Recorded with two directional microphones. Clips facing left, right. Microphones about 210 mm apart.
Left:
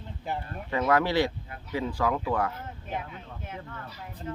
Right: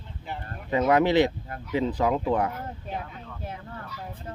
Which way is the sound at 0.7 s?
20° right (ahead or behind).